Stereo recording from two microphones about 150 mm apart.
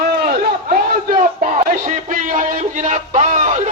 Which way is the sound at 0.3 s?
65° right (ahead or behind).